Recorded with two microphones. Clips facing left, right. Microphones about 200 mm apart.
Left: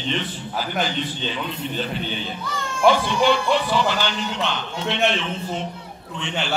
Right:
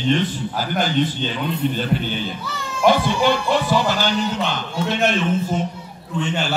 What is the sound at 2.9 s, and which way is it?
Speech, 40° right (ahead or behind).